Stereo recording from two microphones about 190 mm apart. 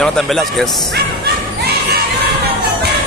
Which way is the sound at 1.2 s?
55° right (ahead or behind).